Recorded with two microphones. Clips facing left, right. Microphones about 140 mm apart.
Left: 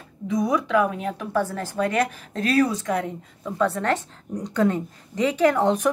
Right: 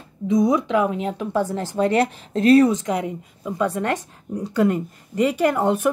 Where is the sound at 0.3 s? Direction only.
20° right (ahead or behind).